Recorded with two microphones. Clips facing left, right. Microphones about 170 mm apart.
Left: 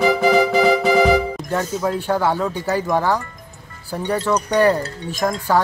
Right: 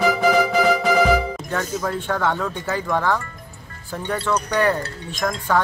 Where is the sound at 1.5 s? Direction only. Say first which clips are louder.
Left 4 dB; 10° left (ahead or behind).